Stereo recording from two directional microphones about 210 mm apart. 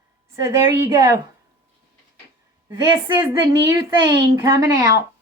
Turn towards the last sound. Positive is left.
turn(degrees=-15)  # may be behind; listen again after turning